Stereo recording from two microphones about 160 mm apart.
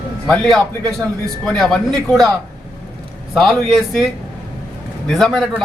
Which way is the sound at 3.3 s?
Centre (ahead or behind).